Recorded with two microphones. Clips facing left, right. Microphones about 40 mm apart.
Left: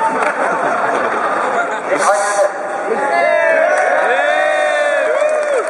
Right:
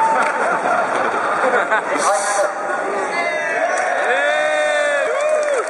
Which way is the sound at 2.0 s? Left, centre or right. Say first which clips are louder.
Left 4 dB; centre.